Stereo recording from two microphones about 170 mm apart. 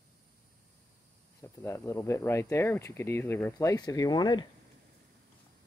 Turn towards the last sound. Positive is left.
turn(degrees=25)  # may be behind; listen again after turning